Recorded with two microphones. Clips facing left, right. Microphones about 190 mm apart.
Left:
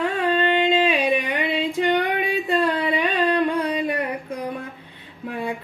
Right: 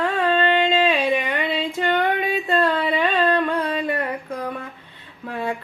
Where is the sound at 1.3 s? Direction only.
15° left (ahead or behind).